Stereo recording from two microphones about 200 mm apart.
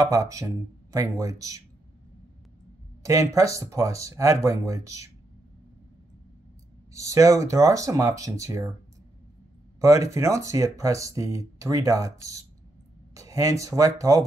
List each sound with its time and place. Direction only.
0.0 s speech: 15° right (ahead or behind)
3.0 s speech: 15° right (ahead or behind)
6.9 s speech: 15° right (ahead or behind)
9.8 s speech: 15° right (ahead or behind)